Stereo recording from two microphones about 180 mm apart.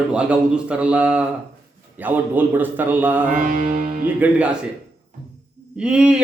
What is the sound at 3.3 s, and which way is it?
Music, 50° right (ahead or behind).